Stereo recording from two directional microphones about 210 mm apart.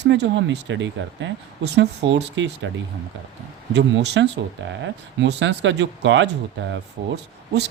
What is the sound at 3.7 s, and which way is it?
Speech, 55° right (ahead or behind).